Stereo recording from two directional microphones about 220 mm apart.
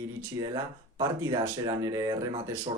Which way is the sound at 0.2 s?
15° right (ahead or behind).